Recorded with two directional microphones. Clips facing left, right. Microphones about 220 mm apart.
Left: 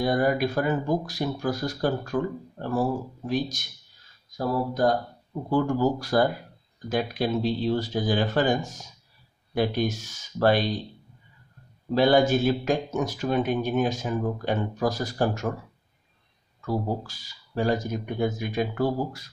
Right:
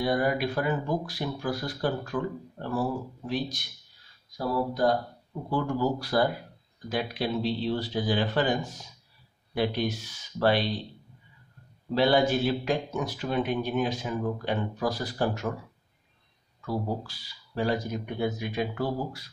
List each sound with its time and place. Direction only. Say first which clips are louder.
0.0 s a man's voice: left 3 dB; 45° left (ahead or behind)
11.9 s a man's voice: left 3 dB; 45° left (ahead or behind)
16.6 s a man's voice: left 3 dB; 45° left (ahead or behind)